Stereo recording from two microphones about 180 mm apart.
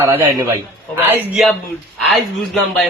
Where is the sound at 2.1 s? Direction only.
Centre (ahead or behind).